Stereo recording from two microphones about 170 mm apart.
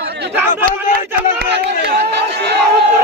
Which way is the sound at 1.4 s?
75° right (ahead or behind).